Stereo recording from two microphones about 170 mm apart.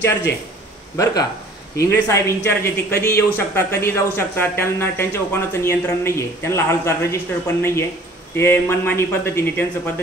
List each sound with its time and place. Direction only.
0.9 s speech: 20° left (ahead or behind)